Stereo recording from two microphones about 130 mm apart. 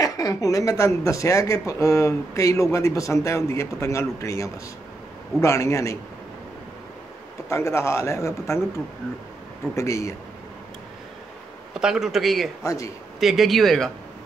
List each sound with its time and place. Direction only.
0.0 s speech: 25° left (ahead or behind)
7.4 s speech: 20° left (ahead or behind)
11.7 s a man's voice: 5° right (ahead or behind)
12.6 s speech: 25° left (ahead or behind)
13.2 s a man's voice: centre (ahead or behind)